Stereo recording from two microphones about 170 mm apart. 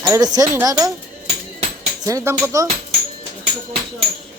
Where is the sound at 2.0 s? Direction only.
20° right (ahead or behind).